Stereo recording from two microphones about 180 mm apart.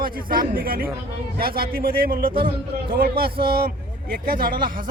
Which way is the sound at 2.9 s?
55° right (ahead or behind).